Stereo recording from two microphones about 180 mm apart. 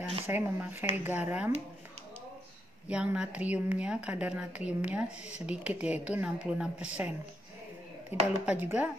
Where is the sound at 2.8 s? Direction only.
5° right (ahead or behind).